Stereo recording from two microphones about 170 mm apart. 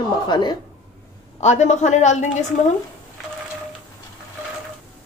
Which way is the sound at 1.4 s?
40° left (ahead or behind).